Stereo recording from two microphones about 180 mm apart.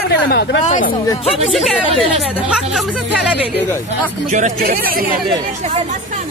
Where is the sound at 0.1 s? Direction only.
65° left (ahead or behind).